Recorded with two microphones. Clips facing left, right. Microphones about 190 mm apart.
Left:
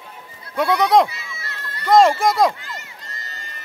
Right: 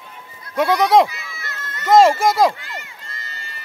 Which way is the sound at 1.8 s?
Centre (ahead or behind).